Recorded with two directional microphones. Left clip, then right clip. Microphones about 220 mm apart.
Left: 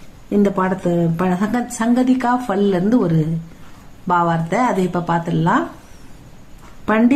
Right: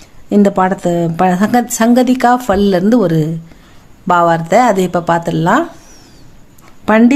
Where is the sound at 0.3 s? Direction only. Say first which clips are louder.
Right 6 dB; 45° right (ahead or behind).